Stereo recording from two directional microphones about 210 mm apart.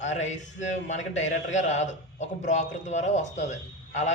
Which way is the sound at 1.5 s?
35° left (ahead or behind).